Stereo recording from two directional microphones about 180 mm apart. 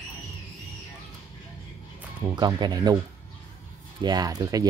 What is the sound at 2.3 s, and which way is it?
Speech, 25° right (ahead or behind).